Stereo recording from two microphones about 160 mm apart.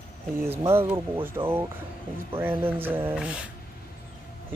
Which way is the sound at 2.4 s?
10° right (ahead or behind).